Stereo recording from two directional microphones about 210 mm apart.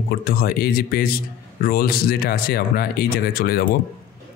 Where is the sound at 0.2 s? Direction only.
45° left (ahead or behind).